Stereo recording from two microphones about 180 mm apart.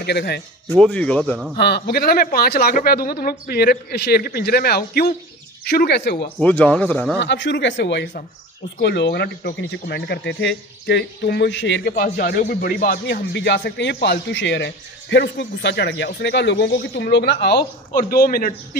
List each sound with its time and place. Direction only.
0.0 s speech: 65° left (ahead or behind)
0.7 s speech: 5° left (ahead or behind)
1.6 s speech: 65° left (ahead or behind)
6.4 s speech: 5° left (ahead or behind)
7.2 s speech: 85° left
8.7 s speech: 70° left (ahead or behind)
11.9 s speech: 60° left (ahead or behind)